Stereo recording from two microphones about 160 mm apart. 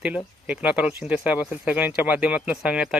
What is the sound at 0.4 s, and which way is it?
Speech, 10° right (ahead or behind).